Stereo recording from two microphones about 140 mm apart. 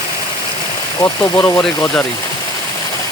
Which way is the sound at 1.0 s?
20° left (ahead or behind).